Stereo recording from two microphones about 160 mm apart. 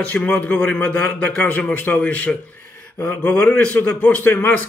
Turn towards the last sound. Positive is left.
turn(degrees=10)  # may be behind; listen again after turning